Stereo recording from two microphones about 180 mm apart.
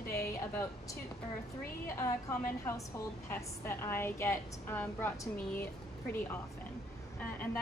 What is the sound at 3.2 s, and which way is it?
A woman's voice, 15° left (ahead or behind).